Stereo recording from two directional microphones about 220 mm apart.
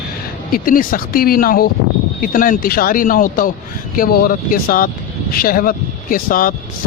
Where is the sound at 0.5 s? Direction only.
40° left (ahead or behind).